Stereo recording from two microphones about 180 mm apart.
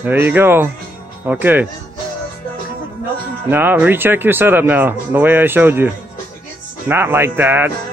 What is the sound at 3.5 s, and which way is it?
Speech, 10° right (ahead or behind).